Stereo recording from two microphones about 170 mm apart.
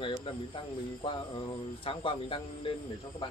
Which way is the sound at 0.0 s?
30° left (ahead or behind).